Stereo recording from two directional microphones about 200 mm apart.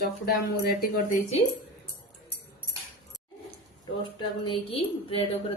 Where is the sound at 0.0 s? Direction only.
50° left (ahead or behind).